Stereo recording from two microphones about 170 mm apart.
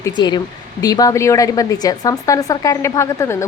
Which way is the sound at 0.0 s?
25° left (ahead or behind).